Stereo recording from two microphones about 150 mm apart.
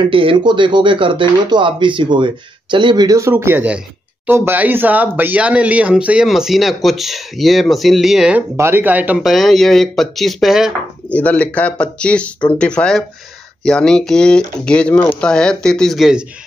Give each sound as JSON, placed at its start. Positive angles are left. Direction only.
{"t": 0.1, "sound": "speech", "side_deg": -35}
{"t": 11.1, "sound": "speech", "side_deg": 10}